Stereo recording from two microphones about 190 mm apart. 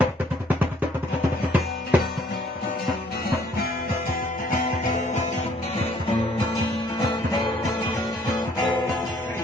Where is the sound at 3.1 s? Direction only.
55° left (ahead or behind); by 8.9 s 20° left (ahead or behind).